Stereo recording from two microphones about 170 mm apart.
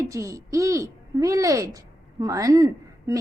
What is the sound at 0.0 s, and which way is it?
A woman's voice, 20° right (ahead or behind).